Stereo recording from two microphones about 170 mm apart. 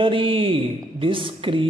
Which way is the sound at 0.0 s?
30° right (ahead or behind).